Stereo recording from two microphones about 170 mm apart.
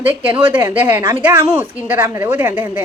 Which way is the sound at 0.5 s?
10° right (ahead or behind).